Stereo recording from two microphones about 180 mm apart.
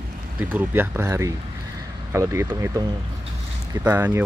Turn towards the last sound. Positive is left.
turn(degrees=-10)  # may be behind; listen again after turning